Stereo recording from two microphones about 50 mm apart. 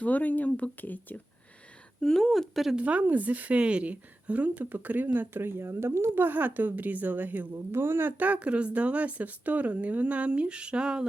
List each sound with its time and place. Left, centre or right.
0.0 s speech: left
2.0 s speech: centre
2.7 s speech: right
6.2 s a woman's voice: right
7.5 s speech: right
8.2 s speech: right